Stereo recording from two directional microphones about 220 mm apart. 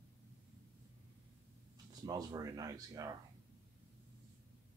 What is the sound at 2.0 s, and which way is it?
Speech, 15° right (ahead or behind).